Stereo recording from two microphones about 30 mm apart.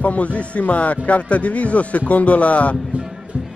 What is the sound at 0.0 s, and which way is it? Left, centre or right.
A man's voice, left.